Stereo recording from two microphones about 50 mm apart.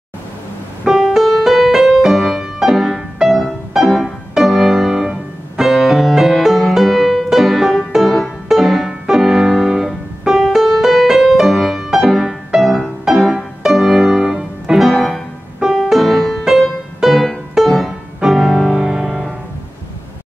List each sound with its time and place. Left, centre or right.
0.8 s music: centre